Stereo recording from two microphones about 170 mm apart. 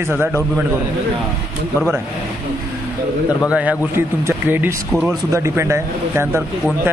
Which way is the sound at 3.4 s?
10° right (ahead or behind).